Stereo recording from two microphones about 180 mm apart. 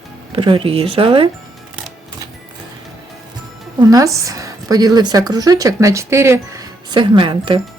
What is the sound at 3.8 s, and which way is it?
A woman's voice, 20° right (ahead or behind).